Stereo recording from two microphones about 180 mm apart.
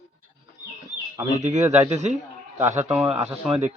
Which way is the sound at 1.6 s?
10° right (ahead or behind).